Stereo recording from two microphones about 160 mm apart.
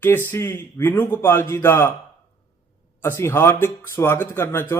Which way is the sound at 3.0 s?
15° left (ahead or behind).